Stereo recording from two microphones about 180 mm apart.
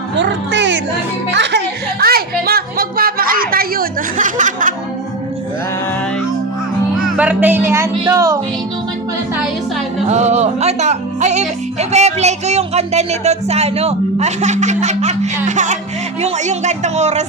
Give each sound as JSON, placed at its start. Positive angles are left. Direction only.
{"t": 0.2, "sound": "a sound", "side_deg": -85}
{"t": 1.3, "sound": "music", "side_deg": -75}
{"t": 7.2, "sound": "speech", "side_deg": -10}
{"t": 10.1, "sound": "speech", "side_deg": -40}